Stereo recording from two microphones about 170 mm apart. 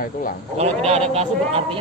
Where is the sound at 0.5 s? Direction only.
40° right (ahead or behind).